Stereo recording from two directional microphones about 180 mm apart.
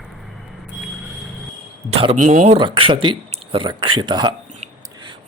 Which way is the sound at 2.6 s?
30° right (ahead or behind).